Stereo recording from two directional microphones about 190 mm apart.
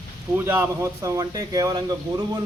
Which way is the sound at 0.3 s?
10° right (ahead or behind).